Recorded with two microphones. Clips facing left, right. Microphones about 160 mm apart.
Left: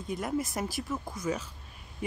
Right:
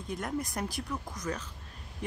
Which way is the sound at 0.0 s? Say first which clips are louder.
Left 3 dB; centre (ahead or behind).